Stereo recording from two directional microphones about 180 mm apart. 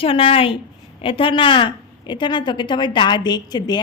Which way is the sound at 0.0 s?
30° left (ahead or behind).